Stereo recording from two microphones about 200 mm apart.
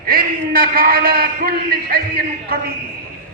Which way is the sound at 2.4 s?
50° right (ahead or behind).